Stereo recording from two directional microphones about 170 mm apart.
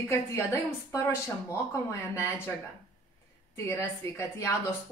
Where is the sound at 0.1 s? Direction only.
15° left (ahead or behind).